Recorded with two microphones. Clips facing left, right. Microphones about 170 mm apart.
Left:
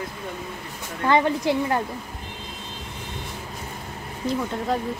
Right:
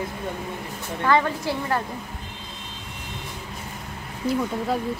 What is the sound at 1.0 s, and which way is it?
Speech, 20° left (ahead or behind).